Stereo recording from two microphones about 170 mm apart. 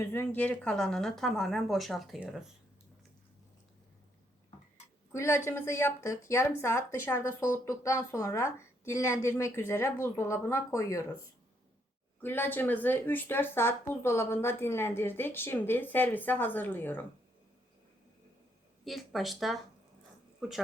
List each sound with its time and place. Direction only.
0.0 s speech: 15° left (ahead or behind); by 2.4 s centre (ahead or behind)
5.1 s speech: 15° left (ahead or behind)
12.2 s speech: 10° left (ahead or behind)
18.9 s speech: centre (ahead or behind)